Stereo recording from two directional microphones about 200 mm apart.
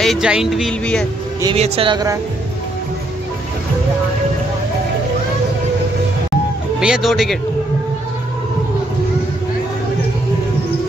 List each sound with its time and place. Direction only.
0.0 s speech: centre (ahead or behind)
1.4 s speech: 30° right (ahead or behind)
6.8 s speech: centre (ahead or behind)